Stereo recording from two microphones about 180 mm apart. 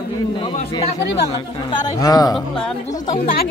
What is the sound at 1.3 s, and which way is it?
Speech, 20° left (ahead or behind).